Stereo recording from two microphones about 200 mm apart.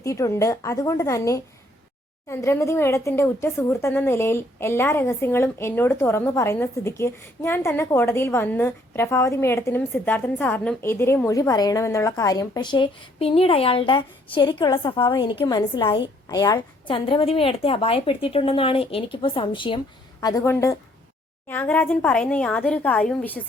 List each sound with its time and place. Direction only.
0.0 s a woman's voice: 15° left (ahead or behind)